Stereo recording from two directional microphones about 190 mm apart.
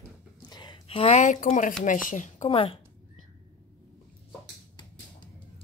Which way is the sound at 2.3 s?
30° left (ahead or behind).